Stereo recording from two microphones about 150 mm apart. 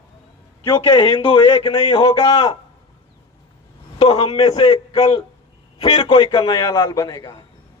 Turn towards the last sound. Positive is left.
turn(degrees=25)  # may be behind; listen again after turning